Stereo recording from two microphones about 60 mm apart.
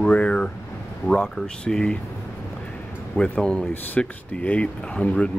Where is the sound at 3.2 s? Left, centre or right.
Centre.